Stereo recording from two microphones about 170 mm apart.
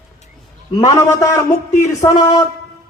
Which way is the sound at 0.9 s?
20° left (ahead or behind).